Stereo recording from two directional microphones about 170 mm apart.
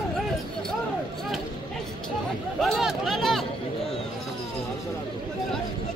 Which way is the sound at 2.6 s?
Centre (ahead or behind).